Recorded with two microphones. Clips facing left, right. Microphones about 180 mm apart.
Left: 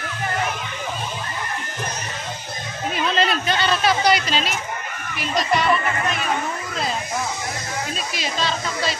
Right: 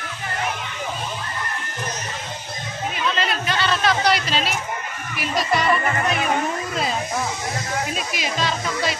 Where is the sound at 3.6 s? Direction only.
10° left (ahead or behind).